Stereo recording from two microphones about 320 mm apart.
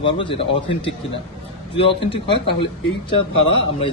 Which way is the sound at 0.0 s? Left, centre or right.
Centre.